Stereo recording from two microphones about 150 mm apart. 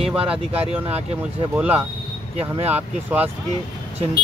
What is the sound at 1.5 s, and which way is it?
Speech, 10° right (ahead or behind).